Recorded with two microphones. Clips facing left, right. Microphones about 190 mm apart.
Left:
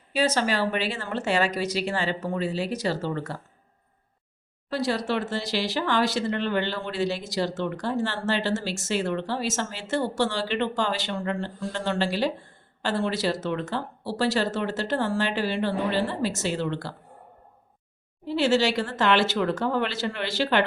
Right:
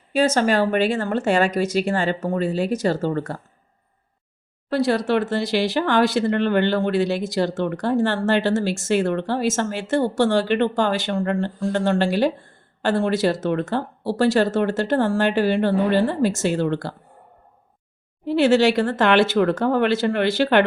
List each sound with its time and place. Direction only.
0.1 s speech: 50° right (ahead or behind)
4.7 s speech: 55° right (ahead or behind)
18.3 s speech: 55° right (ahead or behind)